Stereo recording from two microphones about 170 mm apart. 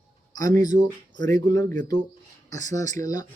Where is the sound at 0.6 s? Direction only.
25° left (ahead or behind).